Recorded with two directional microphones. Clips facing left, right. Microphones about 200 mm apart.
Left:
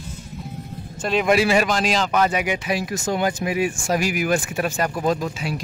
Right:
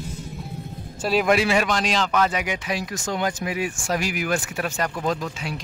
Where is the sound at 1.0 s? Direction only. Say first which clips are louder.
Left 1 dB; centre (ahead or behind).